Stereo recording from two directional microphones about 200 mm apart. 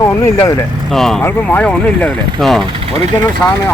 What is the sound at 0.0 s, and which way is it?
Speech, 20° left (ahead or behind).